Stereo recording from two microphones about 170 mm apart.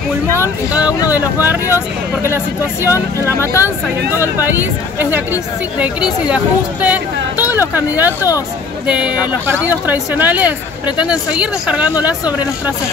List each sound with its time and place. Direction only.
1.1 s speech: 10° right (ahead or behind)
3.3 s speech: 15° left (ahead or behind)
4.4 s speech: 10° right (ahead or behind)